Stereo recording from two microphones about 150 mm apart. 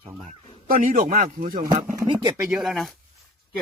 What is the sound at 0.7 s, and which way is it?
Speech, 60° right (ahead or behind).